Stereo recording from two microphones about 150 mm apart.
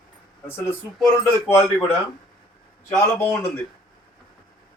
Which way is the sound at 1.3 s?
15° left (ahead or behind).